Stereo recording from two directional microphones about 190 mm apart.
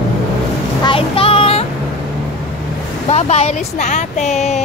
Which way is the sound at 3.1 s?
35° left (ahead or behind).